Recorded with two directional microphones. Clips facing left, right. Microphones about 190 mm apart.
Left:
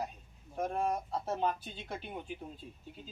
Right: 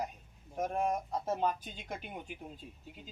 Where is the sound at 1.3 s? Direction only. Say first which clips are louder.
Right 1 dB; 10° right (ahead or behind).